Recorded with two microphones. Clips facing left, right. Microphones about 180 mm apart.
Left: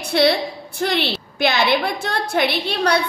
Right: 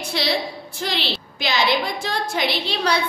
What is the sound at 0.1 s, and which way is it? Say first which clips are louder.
A woman's voice: left 7 dB; 55° left (ahead or behind).